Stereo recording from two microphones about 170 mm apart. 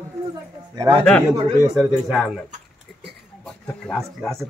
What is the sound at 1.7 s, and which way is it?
Speech, 5° right (ahead or behind).